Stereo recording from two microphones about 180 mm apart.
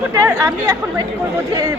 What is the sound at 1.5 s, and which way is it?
Speech, 20° right (ahead or behind).